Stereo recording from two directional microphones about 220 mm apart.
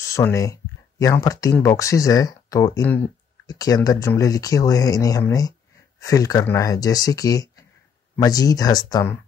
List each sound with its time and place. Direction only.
0.0 s speech: 15° left (ahead or behind)